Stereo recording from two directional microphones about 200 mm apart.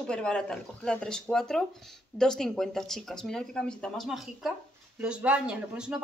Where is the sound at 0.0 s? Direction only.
5° left (ahead or behind).